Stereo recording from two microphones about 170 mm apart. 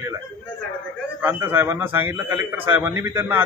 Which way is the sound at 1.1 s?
10° right (ahead or behind).